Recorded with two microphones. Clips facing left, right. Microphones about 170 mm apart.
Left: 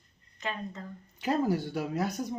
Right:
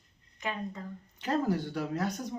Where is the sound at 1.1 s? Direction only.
10° left (ahead or behind).